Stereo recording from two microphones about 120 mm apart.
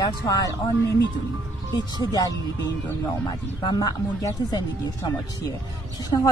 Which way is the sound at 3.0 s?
35° left (ahead or behind).